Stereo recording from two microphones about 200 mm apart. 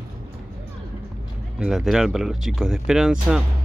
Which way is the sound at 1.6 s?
Centre (ahead or behind).